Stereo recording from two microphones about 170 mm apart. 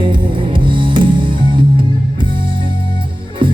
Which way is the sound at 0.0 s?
30° right (ahead or behind).